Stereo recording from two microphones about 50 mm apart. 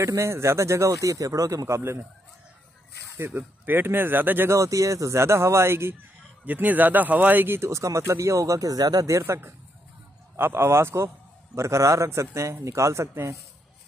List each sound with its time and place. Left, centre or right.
0.0 s speech: right
3.2 s speech: right
4.5 s speech: right
6.4 s speech: right
7.4 s speech: right
7.7 s speech: right
9.2 s speech: right
11.5 s speech: right
12.6 s speech: right